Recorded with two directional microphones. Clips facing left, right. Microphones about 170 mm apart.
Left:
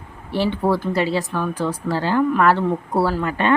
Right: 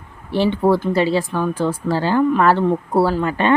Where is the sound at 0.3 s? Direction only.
25° right (ahead or behind).